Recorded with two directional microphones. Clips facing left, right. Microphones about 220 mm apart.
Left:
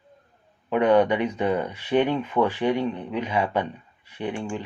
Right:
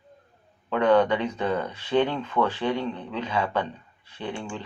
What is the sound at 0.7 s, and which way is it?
Speech, 15° left (ahead or behind).